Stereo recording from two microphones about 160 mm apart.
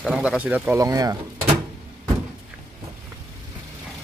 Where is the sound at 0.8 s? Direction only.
20° right (ahead or behind).